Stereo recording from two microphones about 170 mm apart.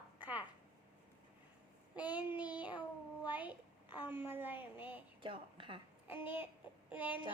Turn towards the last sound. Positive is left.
turn(degrees=-10)  # may be behind; listen again after turning